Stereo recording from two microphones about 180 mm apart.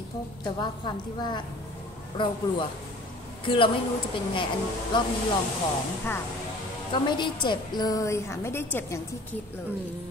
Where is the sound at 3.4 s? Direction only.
30° left (ahead or behind).